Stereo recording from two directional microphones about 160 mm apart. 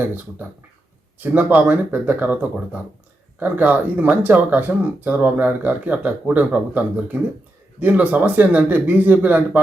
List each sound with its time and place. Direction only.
0.0 s speech: 10° right (ahead or behind)